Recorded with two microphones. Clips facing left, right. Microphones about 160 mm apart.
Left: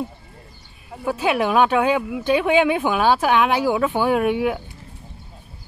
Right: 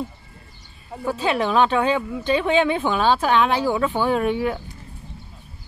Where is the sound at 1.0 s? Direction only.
10° left (ahead or behind).